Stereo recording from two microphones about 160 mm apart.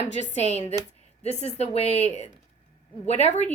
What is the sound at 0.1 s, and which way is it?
Speech, 45° left (ahead or behind).